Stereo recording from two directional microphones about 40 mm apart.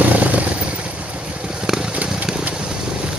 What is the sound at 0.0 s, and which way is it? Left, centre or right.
Vehicle, right.